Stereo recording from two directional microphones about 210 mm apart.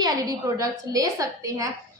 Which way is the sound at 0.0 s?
20° right (ahead or behind).